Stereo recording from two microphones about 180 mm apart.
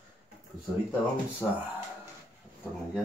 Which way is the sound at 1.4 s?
15° left (ahead or behind).